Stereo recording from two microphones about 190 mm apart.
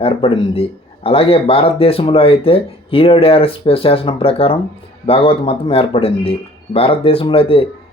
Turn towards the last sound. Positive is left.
turn(degrees=30)  # may be behind; listen again after turning